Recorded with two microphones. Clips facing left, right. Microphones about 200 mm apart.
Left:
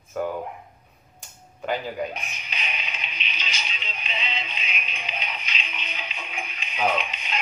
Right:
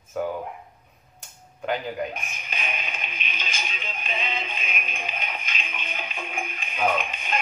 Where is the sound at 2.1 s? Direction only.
50° right (ahead or behind).